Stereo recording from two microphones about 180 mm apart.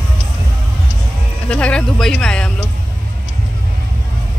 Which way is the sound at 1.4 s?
5° left (ahead or behind).